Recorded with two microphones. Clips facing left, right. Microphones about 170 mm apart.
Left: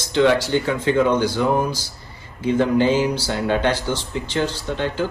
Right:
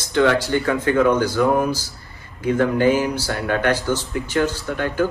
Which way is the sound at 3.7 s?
10° right (ahead or behind).